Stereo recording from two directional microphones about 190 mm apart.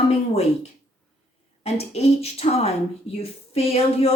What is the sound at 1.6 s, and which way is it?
Speech, 35° left (ahead or behind).